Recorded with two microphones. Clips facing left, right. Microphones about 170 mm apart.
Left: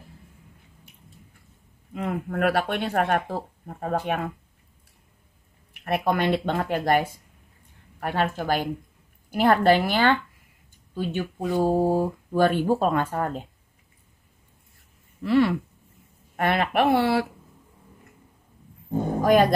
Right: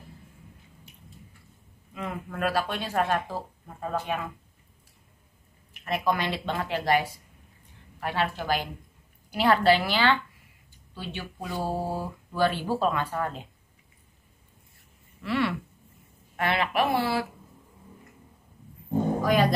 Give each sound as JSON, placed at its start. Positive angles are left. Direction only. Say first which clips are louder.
{"t": 2.0, "sound": "speech", "louder": "left 6 dB", "side_deg": 55}
{"t": 5.7, "sound": "speech", "louder": "left 3 dB", "side_deg": 60}
{"t": 15.2, "sound": "speech", "louder": "left 7 dB", "side_deg": 40}
{"t": 16.3, "sound": "speech", "louder": "left 3 dB", "side_deg": 50}